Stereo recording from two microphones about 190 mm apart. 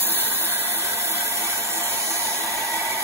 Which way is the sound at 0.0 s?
10° right (ahead or behind).